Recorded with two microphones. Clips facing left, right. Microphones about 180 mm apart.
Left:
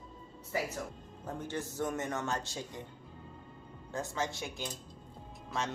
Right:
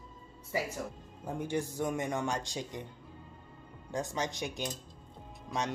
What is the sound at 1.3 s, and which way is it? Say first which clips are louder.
Speech: right 4 dB; 15° right (ahead or behind).